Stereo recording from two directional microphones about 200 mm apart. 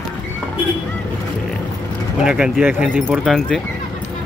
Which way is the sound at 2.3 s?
5° right (ahead or behind).